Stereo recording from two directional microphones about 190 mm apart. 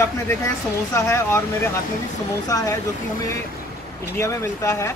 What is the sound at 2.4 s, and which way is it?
Speech, 20° left (ahead or behind).